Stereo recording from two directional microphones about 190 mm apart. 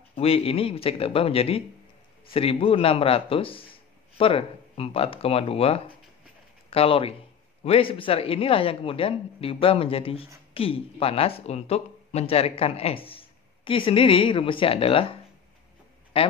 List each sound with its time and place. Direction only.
0.1 s speech: 30° left (ahead or behind)